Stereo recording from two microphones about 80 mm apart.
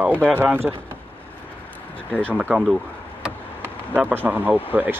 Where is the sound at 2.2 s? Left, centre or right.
Right.